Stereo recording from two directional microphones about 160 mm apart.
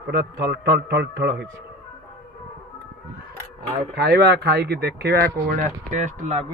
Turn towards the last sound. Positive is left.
turn(degrees=-45)  # may be behind; listen again after turning